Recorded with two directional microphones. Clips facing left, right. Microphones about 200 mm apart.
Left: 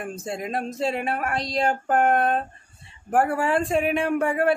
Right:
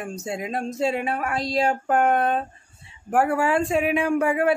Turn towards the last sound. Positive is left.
turn(degrees=0)  # may be behind; listen again after turning